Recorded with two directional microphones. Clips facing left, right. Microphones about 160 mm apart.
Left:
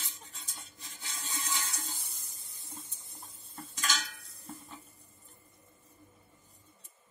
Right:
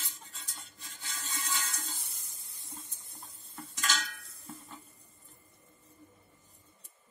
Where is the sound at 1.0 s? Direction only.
10° left (ahead or behind).